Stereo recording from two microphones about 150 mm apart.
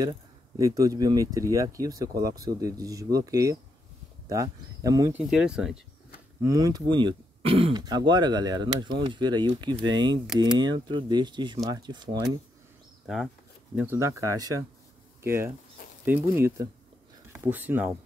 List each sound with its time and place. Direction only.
0.6 s speech: 20° right (ahead or behind)
5.1 s speech: 5° right (ahead or behind)
6.4 s speech: 25° right (ahead or behind)
13.0 s speech: centre (ahead or behind)
13.7 s speech: 15° right (ahead or behind)